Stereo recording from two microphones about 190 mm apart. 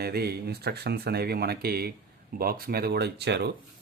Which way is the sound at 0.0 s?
55° right (ahead or behind).